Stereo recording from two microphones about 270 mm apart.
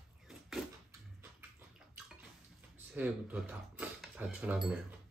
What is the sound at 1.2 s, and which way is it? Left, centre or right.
Bathtub, centre.